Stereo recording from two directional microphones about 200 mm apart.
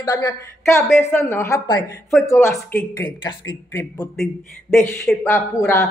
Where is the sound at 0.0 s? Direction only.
20° left (ahead or behind).